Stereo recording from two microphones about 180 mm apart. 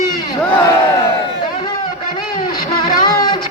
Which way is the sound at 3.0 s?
20° left (ahead or behind).